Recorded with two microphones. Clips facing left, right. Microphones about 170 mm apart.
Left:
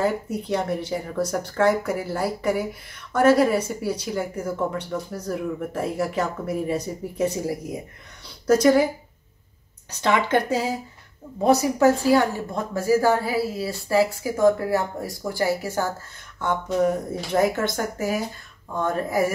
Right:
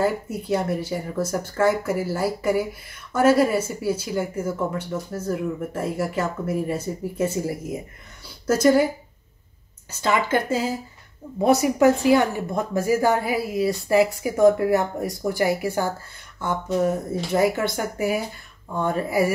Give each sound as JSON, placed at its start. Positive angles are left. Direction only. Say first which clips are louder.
{"t": 0.0, "sound": "speech", "louder": "even", "side_deg": -5}
{"t": 9.8, "sound": "speech", "louder": "left 1 dB", "side_deg": -5}
{"t": 11.4, "sound": "a woman's voice", "louder": "right 1 dB", "side_deg": -15}
{"t": 18.8, "sound": "a woman's voice", "louder": "right 1 dB", "side_deg": -10}